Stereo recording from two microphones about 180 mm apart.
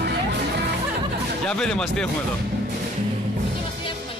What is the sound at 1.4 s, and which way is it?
Speech, 5° left (ahead or behind).